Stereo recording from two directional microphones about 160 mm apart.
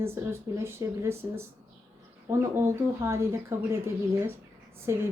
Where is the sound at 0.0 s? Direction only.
15° right (ahead or behind).